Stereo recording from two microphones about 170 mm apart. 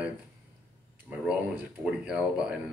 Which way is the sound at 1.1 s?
5° right (ahead or behind).